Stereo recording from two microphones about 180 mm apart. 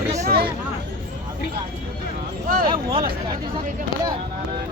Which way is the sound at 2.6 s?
30° right (ahead or behind).